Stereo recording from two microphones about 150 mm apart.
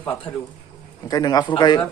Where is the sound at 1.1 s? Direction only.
25° left (ahead or behind).